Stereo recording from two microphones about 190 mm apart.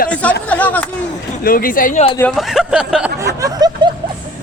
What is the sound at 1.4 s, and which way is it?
Speech, 50° left (ahead or behind).